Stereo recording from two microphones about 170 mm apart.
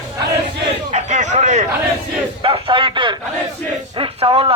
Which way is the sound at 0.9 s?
45° right (ahead or behind).